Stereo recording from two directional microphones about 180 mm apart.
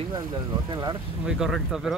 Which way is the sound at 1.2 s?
5° right (ahead or behind).